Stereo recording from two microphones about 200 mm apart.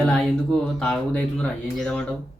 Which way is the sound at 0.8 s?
5° left (ahead or behind).